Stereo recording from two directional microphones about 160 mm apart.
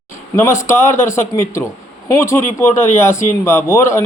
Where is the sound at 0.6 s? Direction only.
15° left (ahead or behind).